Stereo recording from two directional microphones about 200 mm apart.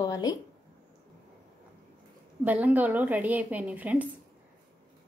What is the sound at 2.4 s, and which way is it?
A woman's voice, 10° right (ahead or behind).